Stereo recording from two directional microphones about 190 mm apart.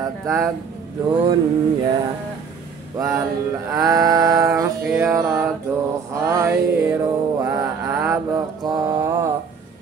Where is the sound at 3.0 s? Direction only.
15° right (ahead or behind).